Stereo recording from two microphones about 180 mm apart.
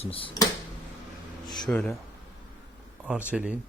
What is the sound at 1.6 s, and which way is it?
Speech, 5° left (ahead or behind).